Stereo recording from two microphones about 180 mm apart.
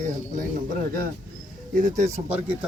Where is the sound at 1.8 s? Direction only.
40° right (ahead or behind).